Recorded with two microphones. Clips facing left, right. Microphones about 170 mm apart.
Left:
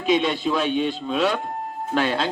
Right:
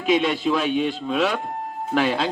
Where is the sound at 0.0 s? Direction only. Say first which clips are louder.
Right 1 dB; 5° right (ahead or behind).